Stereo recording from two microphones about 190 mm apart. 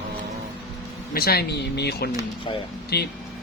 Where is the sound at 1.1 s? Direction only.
55° left (ahead or behind).